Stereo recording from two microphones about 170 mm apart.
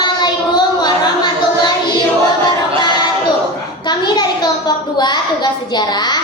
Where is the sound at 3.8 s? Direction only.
25° left (ahead or behind).